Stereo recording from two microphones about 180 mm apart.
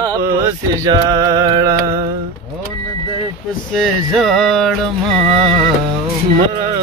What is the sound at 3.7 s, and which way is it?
Music, centre (ahead or behind).